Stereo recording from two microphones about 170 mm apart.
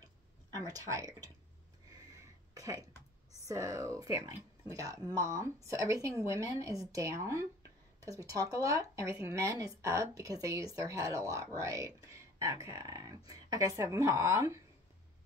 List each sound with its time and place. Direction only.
0.6 s speech: 20° right (ahead or behind)
1.9 s a sound: 20° right (ahead or behind)
3.4 s speech: 20° right (ahead or behind)